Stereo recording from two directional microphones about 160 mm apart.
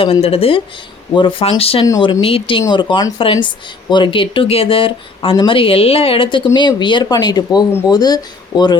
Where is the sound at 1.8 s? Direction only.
25° left (ahead or behind).